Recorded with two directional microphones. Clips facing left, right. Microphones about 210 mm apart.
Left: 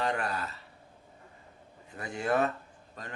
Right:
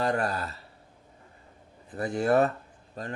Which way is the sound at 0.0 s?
40° right (ahead or behind).